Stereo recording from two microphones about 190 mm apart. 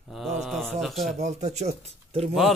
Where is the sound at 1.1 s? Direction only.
35° right (ahead or behind).